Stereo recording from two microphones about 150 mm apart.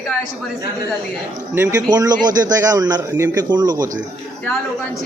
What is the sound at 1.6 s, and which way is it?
A man's voice, 20° right (ahead or behind).